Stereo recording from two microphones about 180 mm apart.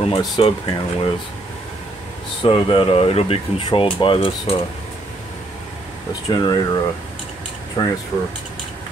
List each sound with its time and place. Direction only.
0.1 s speech: 25° left (ahead or behind)
2.4 s speech: 30° left (ahead or behind)
6.2 s speech: 20° left (ahead or behind)